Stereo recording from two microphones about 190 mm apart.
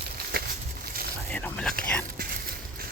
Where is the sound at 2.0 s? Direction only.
50° right (ahead or behind).